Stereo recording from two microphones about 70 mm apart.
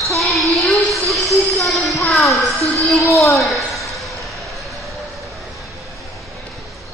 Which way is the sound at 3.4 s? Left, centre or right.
Centre.